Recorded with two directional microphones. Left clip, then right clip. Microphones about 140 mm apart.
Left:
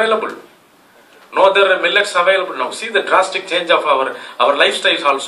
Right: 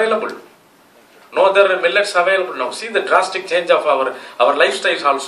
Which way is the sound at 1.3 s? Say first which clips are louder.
Left 1 dB; 25° right (ahead or behind).